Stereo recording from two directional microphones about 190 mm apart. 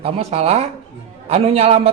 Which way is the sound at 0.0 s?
35° right (ahead or behind).